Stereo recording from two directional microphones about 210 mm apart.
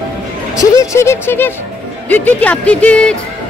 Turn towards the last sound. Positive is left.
turn(degrees=5)  # may be behind; listen again after turning